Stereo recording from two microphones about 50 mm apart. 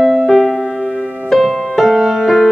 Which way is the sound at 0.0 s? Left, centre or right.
Centre.